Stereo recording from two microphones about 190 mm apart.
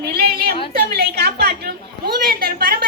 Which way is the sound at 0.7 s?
55° right (ahead or behind).